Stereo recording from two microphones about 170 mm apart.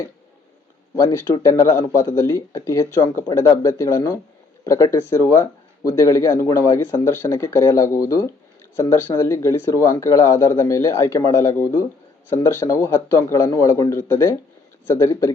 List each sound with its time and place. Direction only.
0.9 s speech: 15° left (ahead or behind)